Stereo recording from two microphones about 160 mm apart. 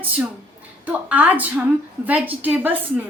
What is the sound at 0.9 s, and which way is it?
A woman's voice, 10° right (ahead or behind).